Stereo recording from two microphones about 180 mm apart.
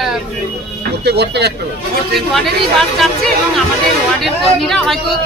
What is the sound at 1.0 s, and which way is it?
Speech, 65° right (ahead or behind).